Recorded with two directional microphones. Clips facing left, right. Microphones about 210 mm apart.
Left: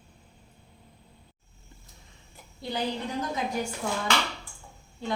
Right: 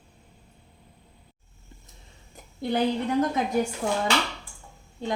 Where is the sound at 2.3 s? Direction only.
55° right (ahead or behind).